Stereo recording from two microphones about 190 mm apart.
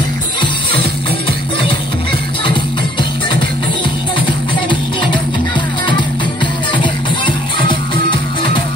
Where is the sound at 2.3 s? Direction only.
25° left (ahead or behind).